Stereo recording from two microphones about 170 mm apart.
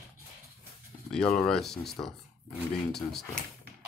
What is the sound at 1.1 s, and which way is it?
Speech, 5° left (ahead or behind).